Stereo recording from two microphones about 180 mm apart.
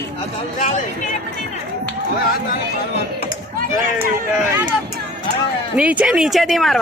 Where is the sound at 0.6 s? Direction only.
45° left (ahead or behind).